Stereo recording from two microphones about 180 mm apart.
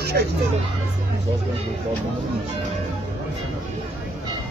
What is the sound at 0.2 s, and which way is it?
Speech, 60° right (ahead or behind).